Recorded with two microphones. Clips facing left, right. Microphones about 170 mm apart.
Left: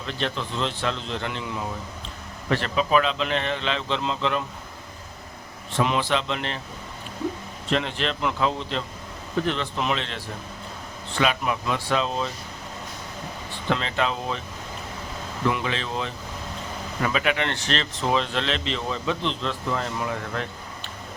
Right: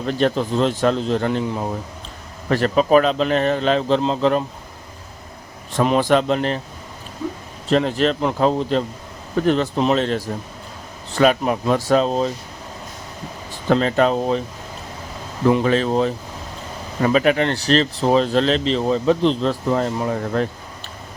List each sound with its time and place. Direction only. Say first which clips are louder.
0.0 s a man's voice: right 10 dB; 45° right (ahead or behind)
5.7 s a man's voice: right 7 dB; 45° right (ahead or behind)
7.7 s speech: right 8 dB; 40° right (ahead or behind)
13.7 s a man's voice: right 9 dB; 45° right (ahead or behind)
15.4 s speech: right 10 dB; 40° right (ahead or behind)